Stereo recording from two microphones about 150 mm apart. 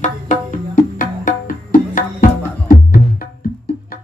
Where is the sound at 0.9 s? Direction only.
65° left (ahead or behind).